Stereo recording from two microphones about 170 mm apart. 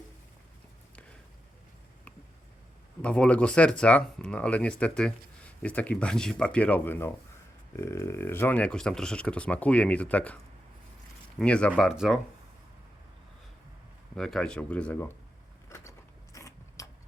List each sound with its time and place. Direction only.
3.0 s speech: 5° left (ahead or behind)
11.3 s speech: 5° left (ahead or behind)
14.2 s speech: 5° left (ahead or behind)
15.9 s biting: 20° left (ahead or behind)